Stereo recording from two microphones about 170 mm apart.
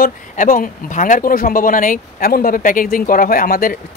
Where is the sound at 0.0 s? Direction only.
55° left (ahead or behind).